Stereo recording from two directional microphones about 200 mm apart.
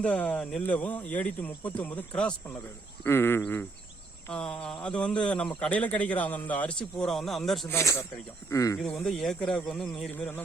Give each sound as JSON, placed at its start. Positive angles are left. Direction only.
{"t": 0.0, "sound": "a man's voice", "side_deg": 5}
{"t": 7.7, "sound": "speech", "side_deg": 15}
{"t": 8.8, "sound": "a man's voice", "side_deg": 0}